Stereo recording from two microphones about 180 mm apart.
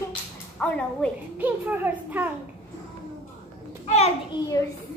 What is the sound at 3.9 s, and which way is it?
Speech, 35° left (ahead or behind).